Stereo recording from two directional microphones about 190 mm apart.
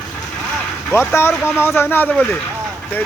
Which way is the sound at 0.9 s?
10° left (ahead or behind).